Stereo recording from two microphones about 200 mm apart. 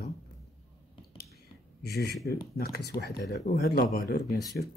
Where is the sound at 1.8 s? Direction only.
50° left (ahead or behind).